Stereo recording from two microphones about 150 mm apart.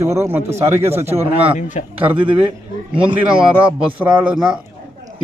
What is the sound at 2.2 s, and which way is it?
Speech, 35° right (ahead or behind).